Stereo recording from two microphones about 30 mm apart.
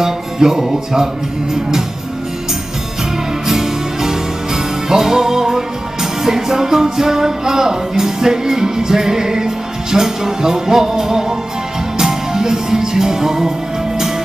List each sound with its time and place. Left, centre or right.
0.0 s music: centre
3.4 s music: centre